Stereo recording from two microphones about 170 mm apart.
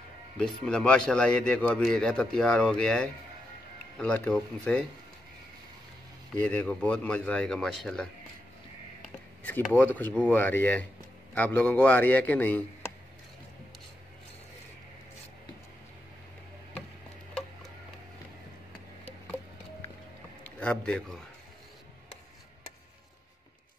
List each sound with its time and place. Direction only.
0.4 s a man's voice: 5° left (ahead or behind)
6.4 s a man's voice: 10° left (ahead or behind)
9.4 s a man's voice: 10° left (ahead or behind)
20.5 s a sound: 5° left (ahead or behind)